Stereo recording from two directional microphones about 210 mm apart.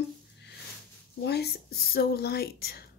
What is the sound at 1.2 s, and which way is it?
Speech, 50° left (ahead or behind).